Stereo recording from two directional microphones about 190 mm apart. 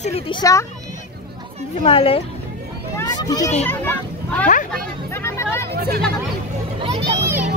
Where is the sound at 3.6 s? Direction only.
10° left (ahead or behind).